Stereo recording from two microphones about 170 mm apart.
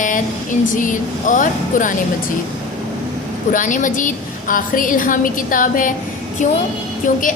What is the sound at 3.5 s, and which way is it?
A woman's voice, 50° left (ahead or behind).